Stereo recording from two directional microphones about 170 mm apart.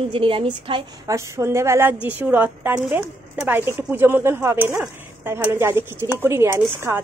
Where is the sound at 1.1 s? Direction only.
15° right (ahead or behind).